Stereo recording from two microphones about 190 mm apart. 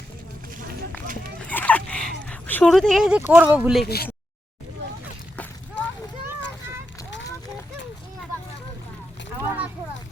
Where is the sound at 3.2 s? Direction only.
10° right (ahead or behind).